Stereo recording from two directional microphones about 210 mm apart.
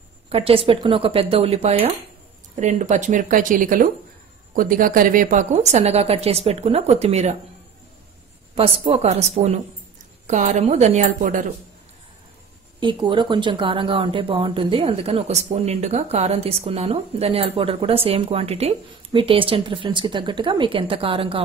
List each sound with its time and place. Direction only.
0.3 s a woman's voice: 25° right (ahead or behind)
8.5 s a woman's voice: 25° right (ahead or behind)
12.8 s speech: 25° right (ahead or behind)